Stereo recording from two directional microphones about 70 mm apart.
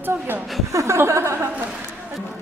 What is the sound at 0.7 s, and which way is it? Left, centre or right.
Speech, right.